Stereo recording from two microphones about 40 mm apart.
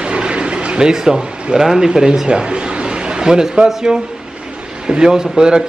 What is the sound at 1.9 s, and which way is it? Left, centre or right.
A man's voice, centre.